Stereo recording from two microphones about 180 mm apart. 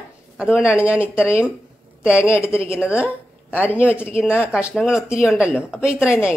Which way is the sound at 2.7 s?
5° right (ahead or behind).